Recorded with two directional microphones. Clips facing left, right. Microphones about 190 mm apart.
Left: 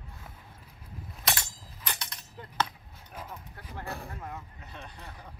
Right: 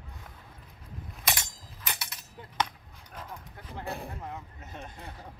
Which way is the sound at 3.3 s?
20° right (ahead or behind).